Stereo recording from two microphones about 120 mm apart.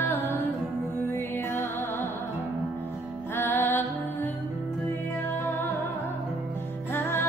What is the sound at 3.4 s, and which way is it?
Music, 20° left (ahead or behind).